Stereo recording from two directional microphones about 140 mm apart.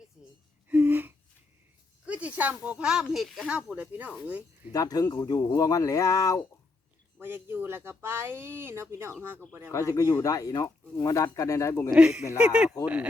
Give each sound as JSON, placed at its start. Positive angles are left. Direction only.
{"t": 0.2, "sound": "gasp", "side_deg": -5}
{"t": 2.0, "sound": "speech", "side_deg": -10}
{"t": 4.7, "sound": "speech", "side_deg": 25}
{"t": 7.2, "sound": "speech", "side_deg": -15}
{"t": 9.7, "sound": "speech", "side_deg": 20}
{"t": 11.9, "sound": "speech", "side_deg": -5}